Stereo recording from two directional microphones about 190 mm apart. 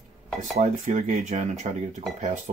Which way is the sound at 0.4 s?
40° right (ahead or behind).